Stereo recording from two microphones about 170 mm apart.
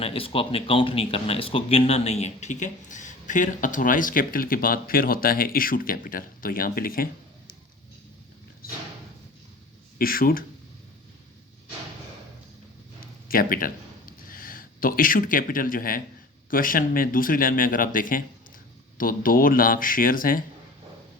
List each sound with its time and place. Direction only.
0.0 s speech: 35° left (ahead or behind); by 7.5 s 60° left (ahead or behind)
10.0 s speech: 60° left (ahead or behind)
13.2 s speech: 55° left (ahead or behind)